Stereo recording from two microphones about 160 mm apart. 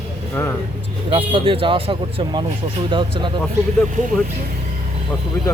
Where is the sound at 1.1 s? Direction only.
35° right (ahead or behind).